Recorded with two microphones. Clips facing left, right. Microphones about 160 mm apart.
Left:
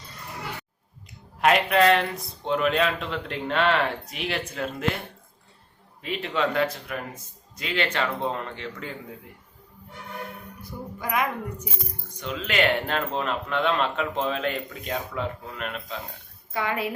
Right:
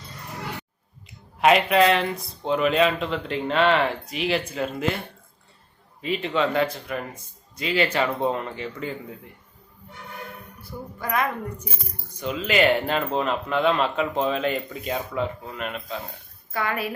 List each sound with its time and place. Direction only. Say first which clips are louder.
1.4 s speech: right 2 dB; centre (ahead or behind)
6.0 s speech: right 3 dB; centre (ahead or behind)
10.6 s speech: right 1 dB; 15° left (ahead or behind)
12.2 s speech: right 4 dB; centre (ahead or behind)
16.5 s a woman's voice: even; 20° left (ahead or behind)